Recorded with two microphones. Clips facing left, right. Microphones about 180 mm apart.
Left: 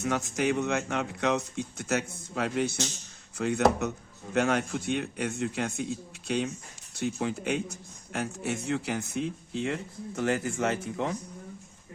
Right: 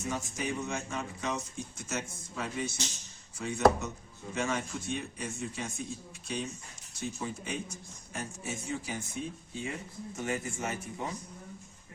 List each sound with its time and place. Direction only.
0.0 s speech: 70° left (ahead or behind)